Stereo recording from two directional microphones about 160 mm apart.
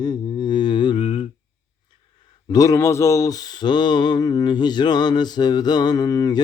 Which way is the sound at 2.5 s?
20° left (ahead or behind).